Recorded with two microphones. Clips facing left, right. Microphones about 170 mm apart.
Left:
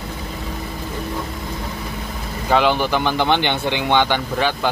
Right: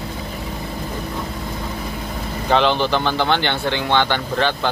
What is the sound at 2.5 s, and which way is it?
Speech, 10° left (ahead or behind).